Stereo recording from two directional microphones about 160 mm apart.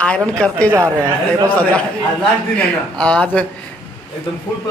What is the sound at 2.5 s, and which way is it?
Speech, 5° left (ahead or behind).